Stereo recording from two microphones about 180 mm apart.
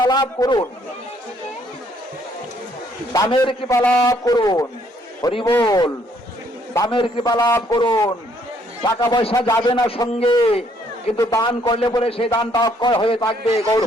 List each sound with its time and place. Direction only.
0.1 s a man's voice: 20° left (ahead or behind)
3.1 s a man's voice: 20° left (ahead or behind)
3.8 s a man's voice: 15° left (ahead or behind); by 10.6 s 30° left (ahead or behind)
11.2 s a man's voice: 20° left (ahead or behind)